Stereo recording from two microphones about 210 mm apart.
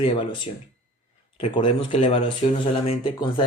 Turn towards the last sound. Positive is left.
turn(degrees=25)  # may be behind; listen again after turning